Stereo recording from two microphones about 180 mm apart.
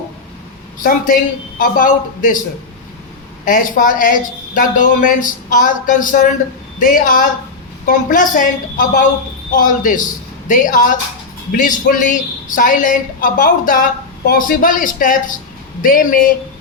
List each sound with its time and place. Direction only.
0.8 s a woman's voice: 50° left (ahead or behind)
3.4 s a woman's voice: 50° left (ahead or behind)